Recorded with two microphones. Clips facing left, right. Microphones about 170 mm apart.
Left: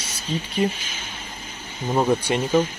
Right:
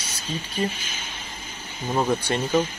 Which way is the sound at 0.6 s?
20° left (ahead or behind).